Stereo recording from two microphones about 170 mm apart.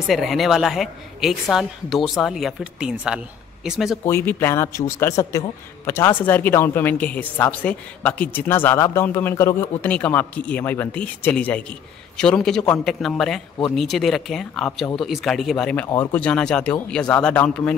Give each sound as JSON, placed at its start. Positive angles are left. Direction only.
{"t": 0.1, "sound": "a man's voice", "side_deg": 0}
{"t": 4.0, "sound": "a man's voice", "side_deg": 15}